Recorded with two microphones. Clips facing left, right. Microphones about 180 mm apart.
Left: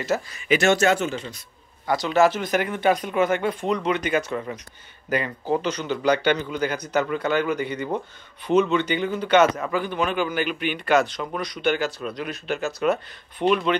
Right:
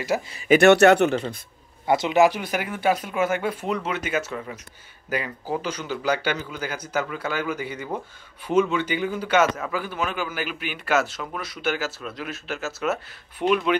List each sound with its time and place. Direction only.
0.1 s speech: 10° right (ahead or behind)
0.5 s speech: 60° right (ahead or behind)
1.9 s a man's voice: 20° right (ahead or behind)